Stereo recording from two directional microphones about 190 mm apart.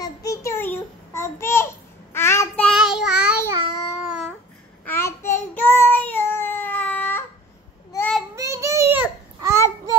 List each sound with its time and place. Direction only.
0.0 s child singing: 15° left (ahead or behind)
2.7 s child singing: 5° right (ahead or behind)
3.4 s babbling: 20° right (ahead or behind)
4.0 s babbling: 5° right (ahead or behind)
4.8 s child singing: 15° left (ahead or behind)
8.4 s babbling: 15° right (ahead or behind)